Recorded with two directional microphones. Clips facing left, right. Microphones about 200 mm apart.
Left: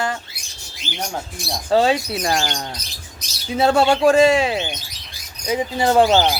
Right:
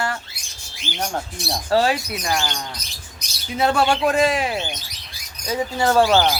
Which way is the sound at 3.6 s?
25° left (ahead or behind).